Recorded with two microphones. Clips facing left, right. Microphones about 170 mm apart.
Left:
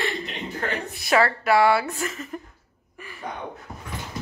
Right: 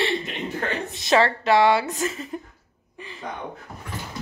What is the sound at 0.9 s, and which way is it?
Speech, 20° right (ahead or behind).